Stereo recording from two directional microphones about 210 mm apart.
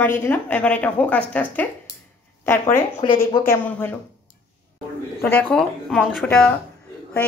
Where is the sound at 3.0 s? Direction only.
20° left (ahead or behind).